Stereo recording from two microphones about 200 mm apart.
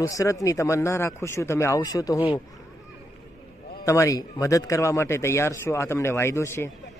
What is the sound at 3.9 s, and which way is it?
Speech, 15° left (ahead or behind).